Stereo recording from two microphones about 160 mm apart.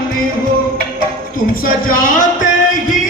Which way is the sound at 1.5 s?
60° left (ahead or behind).